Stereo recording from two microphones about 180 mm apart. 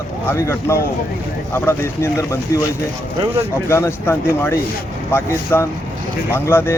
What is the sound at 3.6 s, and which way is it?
Speech, 15° left (ahead or behind).